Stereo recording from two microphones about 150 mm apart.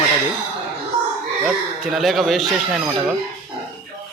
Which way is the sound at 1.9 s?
Centre (ahead or behind).